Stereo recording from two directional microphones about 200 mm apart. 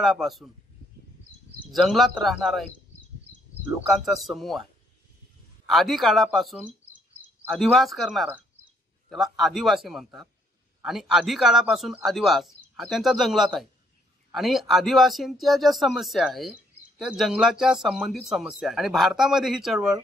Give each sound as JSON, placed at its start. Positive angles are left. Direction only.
{"t": 0.0, "sound": "speech", "side_deg": 0}
{"t": 1.7, "sound": "speech", "side_deg": 0}
{"t": 3.9, "sound": "speech", "side_deg": 0}
{"t": 5.7, "sound": "speech", "side_deg": 0}